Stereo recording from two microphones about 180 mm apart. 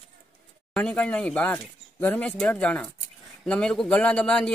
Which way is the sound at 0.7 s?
5° left (ahead or behind).